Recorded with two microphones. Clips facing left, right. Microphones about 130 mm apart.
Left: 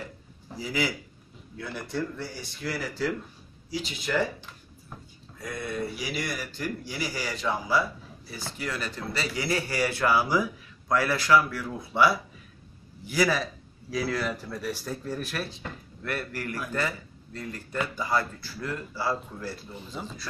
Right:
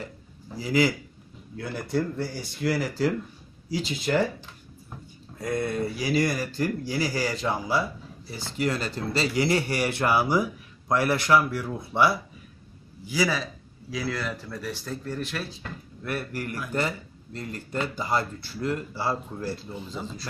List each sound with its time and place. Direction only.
0.6 s speech: 40° right (ahead or behind)
5.4 s speech: 40° right (ahead or behind); by 12.2 s 20° right (ahead or behind)
13.0 s speech: centre (ahead or behind)
16.0 s a man's voice: 10° right (ahead or behind)
17.4 s speech: 25° right (ahead or behind)